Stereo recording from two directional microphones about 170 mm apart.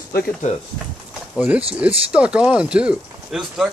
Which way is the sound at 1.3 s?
10° right (ahead or behind).